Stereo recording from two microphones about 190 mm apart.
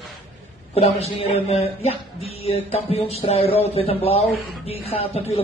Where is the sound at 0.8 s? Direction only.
30° left (ahead or behind).